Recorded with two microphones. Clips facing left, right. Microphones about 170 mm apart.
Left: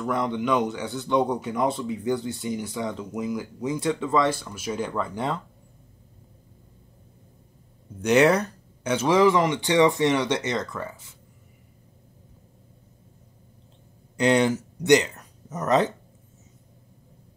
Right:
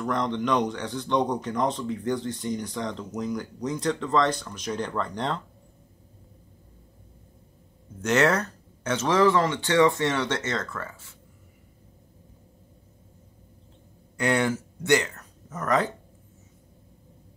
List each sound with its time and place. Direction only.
0.0 s speech: 5° left (ahead or behind)
8.0 s speech: 15° left (ahead or behind)
14.1 s speech: 20° left (ahead or behind)